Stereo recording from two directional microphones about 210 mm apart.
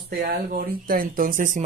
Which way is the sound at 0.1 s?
40° right (ahead or behind).